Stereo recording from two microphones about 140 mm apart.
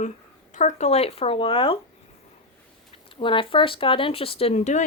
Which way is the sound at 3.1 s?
35° left (ahead or behind).